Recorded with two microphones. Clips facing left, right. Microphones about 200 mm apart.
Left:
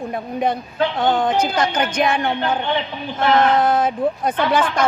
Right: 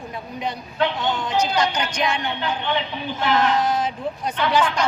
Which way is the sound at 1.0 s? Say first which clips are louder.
Left 5 dB; 55° left (ahead or behind).